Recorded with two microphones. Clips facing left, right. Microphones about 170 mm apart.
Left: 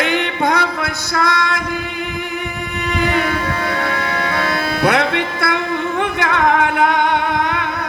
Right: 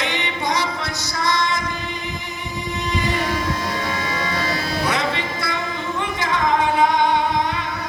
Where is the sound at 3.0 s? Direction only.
60° left (ahead or behind).